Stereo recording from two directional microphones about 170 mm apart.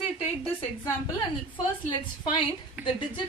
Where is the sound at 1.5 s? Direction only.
30° left (ahead or behind).